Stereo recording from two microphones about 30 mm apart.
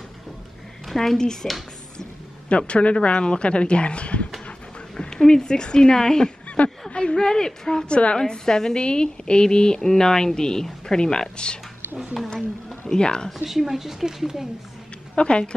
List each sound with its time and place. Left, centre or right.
0.8 s speech: centre
1.4 s speech: left
2.5 s speech: left
4.9 s speech: left
6.9 s a sound: left
7.2 s speech: left
7.8 s speech: left
8.2 s speech: left
12.1 s speech: centre
12.9 s speech: left
13.4 s speech: centre
15.1 s speech: left